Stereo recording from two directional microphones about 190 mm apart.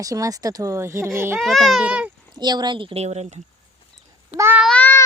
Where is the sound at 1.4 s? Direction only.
Centre (ahead or behind).